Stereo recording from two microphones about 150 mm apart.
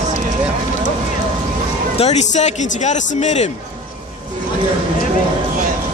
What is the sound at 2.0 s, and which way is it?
Speech, 50° left (ahead or behind).